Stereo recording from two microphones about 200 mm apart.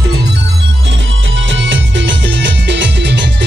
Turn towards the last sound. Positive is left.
turn(degrees=-60)  # may be behind; listen again after turning